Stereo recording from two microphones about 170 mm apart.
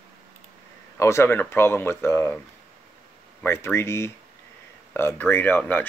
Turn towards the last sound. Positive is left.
turn(degrees=10)  # may be behind; listen again after turning